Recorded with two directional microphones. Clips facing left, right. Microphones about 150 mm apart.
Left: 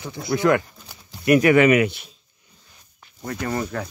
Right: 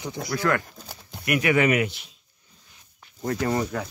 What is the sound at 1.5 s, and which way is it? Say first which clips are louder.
Speech: left 6 dB; 75° left (ahead or behind).